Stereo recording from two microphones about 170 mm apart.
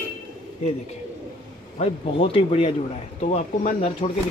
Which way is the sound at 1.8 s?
35° left (ahead or behind).